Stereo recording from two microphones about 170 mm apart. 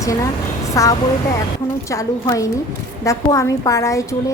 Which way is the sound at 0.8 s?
20° left (ahead or behind).